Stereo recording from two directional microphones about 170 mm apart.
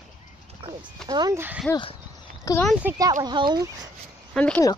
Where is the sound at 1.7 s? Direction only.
30° left (ahead or behind).